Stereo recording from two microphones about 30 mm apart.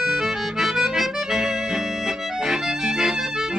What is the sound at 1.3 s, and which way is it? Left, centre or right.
Music, right.